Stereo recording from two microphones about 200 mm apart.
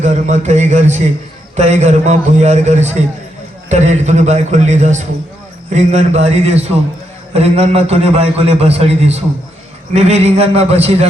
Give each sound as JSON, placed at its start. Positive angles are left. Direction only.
{"t": 0.0, "sound": "a man's voice", "side_deg": -35}